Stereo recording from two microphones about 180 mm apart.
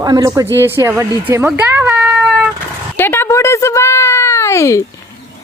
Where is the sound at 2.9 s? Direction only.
10° left (ahead or behind).